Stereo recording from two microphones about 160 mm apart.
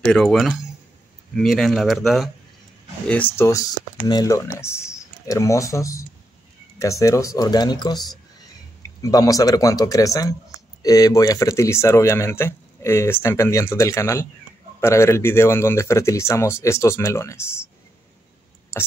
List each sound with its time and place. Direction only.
0.0 s speech: 5° left (ahead or behind)
3.3 s speech: 20° left (ahead or behind)